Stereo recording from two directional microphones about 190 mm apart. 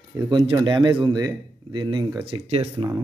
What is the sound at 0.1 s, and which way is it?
Speech, 20° right (ahead or behind).